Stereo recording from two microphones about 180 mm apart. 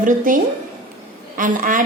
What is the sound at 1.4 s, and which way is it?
Speech, 50° right (ahead or behind).